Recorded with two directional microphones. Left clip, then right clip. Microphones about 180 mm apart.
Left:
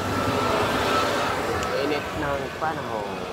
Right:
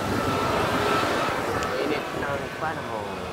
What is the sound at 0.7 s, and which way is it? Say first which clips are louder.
Vehicle: left 1 dB; 70° left (ahead or behind).